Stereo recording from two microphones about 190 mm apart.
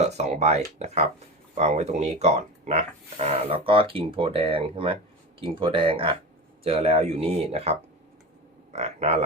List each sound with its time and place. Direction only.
0.0 s speech: 35° right (ahead or behind)